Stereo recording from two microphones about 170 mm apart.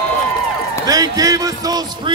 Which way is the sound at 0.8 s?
20° right (ahead or behind).